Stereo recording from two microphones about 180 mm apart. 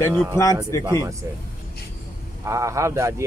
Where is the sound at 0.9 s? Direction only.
20° right (ahead or behind).